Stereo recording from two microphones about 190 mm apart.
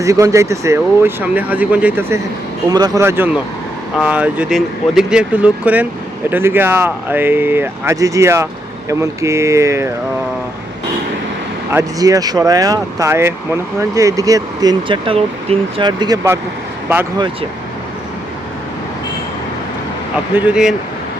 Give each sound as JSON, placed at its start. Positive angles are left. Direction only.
{"t": 0.0, "sound": "speech", "side_deg": -15}
{"t": 11.7, "sound": "speech", "side_deg": -15}
{"t": 20.3, "sound": "speech", "side_deg": -5}